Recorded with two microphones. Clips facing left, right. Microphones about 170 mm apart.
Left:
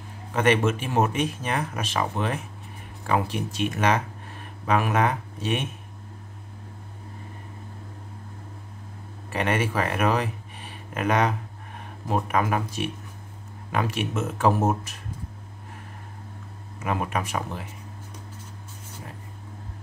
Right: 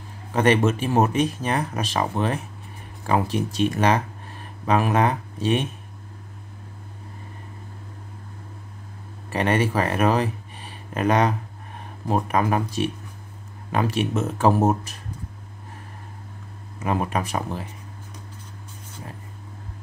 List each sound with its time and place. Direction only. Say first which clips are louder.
0.3 s speech: right 3 dB; 35° right (ahead or behind)
9.3 s speech: right 3 dB; 35° right (ahead or behind)
16.8 s speech: right 3 dB; 35° right (ahead or behind)